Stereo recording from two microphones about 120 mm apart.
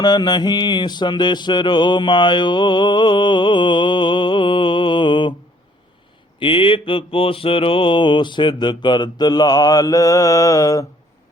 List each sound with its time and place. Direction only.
0.0 s mantra: 35° left (ahead or behind)
6.4 s mantra: 45° left (ahead or behind); by 10.8 s 30° left (ahead or behind)